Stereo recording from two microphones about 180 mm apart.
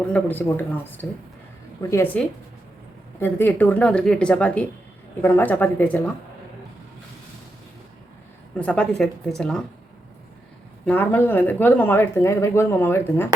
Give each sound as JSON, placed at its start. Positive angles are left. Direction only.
{"t": 0.1, "sound": "speech", "side_deg": 10}
{"t": 3.2, "sound": "speech", "side_deg": 10}
{"t": 8.5, "sound": "a woman's voice", "side_deg": 5}
{"t": 10.8, "sound": "speech", "side_deg": 10}